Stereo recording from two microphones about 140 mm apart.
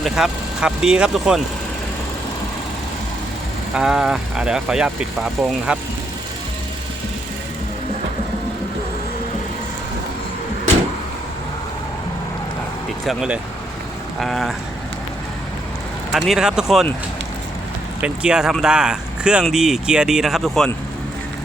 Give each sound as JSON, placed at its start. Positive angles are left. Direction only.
{"t": 0.0, "sound": "speech", "side_deg": -5}
{"t": 3.8, "sound": "speech", "side_deg": -5}
{"t": 13.1, "sound": "speech", "side_deg": -5}
{"t": 16.1, "sound": "speech", "side_deg": 0}
{"t": 18.0, "sound": "speech", "side_deg": -5}